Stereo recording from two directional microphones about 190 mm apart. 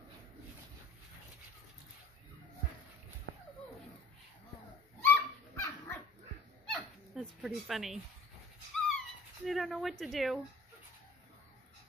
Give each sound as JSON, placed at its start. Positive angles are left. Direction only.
{"t": 3.3, "sound": "a sound", "side_deg": -90}
{"t": 5.0, "sound": "dog", "side_deg": 10}
{"t": 6.7, "sound": "dog", "side_deg": 0}
{"t": 8.8, "sound": "speech", "side_deg": 0}